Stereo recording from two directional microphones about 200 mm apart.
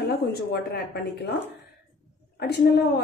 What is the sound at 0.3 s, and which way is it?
Speech, 50° left (ahead or behind).